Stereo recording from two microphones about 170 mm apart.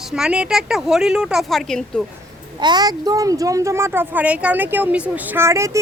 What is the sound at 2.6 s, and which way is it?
Speech, 25° right (ahead or behind).